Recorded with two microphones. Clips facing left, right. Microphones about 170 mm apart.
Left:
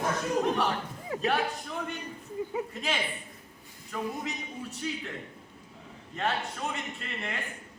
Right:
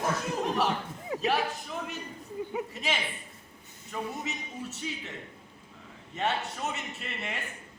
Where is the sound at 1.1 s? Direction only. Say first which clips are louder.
Even; 20° right (ahead or behind).